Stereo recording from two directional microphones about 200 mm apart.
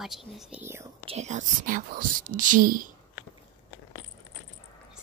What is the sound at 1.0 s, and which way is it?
Speech, 30° right (ahead or behind).